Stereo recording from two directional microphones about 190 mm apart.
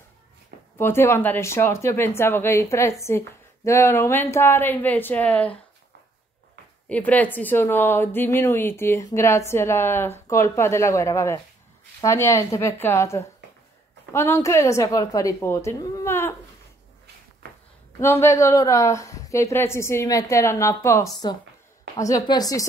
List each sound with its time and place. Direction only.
0.7 s speech: 15° left (ahead or behind)
6.9 s speech: 10° left (ahead or behind)
18.0 s speech: 15° left (ahead or behind)